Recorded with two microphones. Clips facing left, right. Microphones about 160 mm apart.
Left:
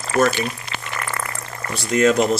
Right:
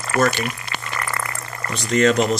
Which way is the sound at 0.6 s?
5° left (ahead or behind).